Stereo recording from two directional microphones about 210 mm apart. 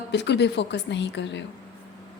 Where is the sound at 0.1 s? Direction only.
55° left (ahead or behind).